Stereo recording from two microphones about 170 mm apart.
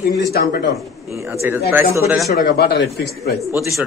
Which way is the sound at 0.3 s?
65° left (ahead or behind).